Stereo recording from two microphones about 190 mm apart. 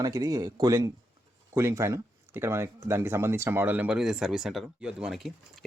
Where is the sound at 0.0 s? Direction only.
20° right (ahead or behind).